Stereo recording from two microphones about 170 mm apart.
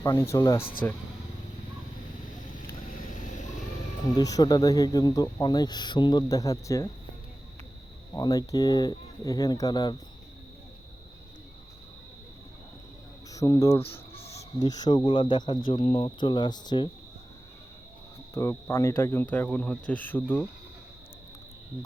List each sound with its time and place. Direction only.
0.0 s speech: 15° left (ahead or behind)
0.6 s speech: 30° left (ahead or behind)
2.9 s vehicle: 50° left (ahead or behind)
4.2 s speech: 20° left (ahead or behind)
8.1 s speech: 20° left (ahead or behind)
13.3 s speech: 20° left (ahead or behind)
13.9 s cricket: 35° left (ahead or behind)
14.6 s speech: 25° left (ahead or behind)
18.3 s speech: 15° left (ahead or behind)